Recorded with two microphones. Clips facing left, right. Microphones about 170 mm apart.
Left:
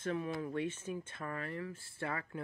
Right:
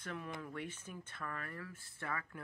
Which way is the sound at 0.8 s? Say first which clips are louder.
Left 9 dB; 50° left (ahead or behind).